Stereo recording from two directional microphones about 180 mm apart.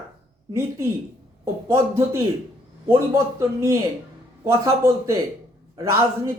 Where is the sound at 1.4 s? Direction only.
15° right (ahead or behind).